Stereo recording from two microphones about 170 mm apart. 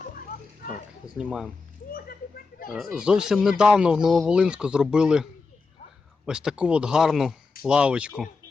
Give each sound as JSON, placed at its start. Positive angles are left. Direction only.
{"t": 1.0, "sound": "speech", "side_deg": -5}
{"t": 1.9, "sound": "children playing", "side_deg": 60}
{"t": 2.6, "sound": "speech", "side_deg": 0}